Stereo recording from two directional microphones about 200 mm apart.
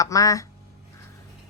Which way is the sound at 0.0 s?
15° left (ahead or behind).